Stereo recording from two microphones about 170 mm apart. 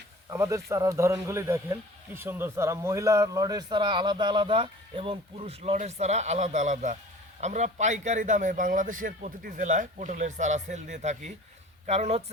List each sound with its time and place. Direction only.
0.3 s a man's voice: 15° right (ahead or behind); by 12.2 s 40° right (ahead or behind)